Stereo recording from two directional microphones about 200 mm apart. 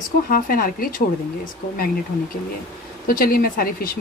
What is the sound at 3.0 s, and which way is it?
Speech, 45° left (ahead or behind).